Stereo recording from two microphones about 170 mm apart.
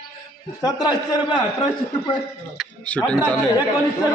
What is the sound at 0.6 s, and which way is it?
Speech, 25° left (ahead or behind).